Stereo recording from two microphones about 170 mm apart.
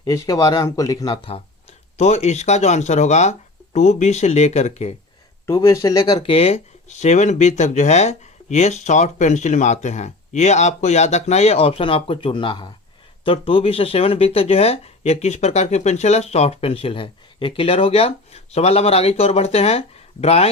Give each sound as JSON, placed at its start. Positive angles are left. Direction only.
{"t": 0.0, "sound": "speech", "side_deg": 20}
{"t": 5.6, "sound": "speech", "side_deg": 20}